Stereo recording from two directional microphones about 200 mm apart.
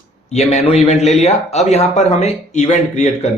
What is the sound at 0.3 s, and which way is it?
Speech, 35° left (ahead or behind).